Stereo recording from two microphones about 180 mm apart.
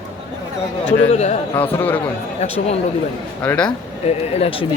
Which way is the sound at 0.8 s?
40° left (ahead or behind).